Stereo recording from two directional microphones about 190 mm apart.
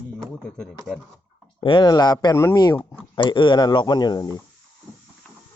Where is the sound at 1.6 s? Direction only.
25° left (ahead or behind).